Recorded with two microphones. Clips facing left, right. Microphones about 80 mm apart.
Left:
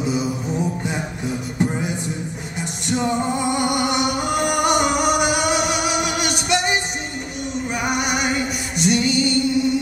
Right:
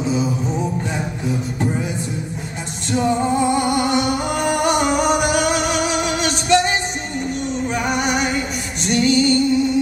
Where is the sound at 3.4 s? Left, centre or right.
Right.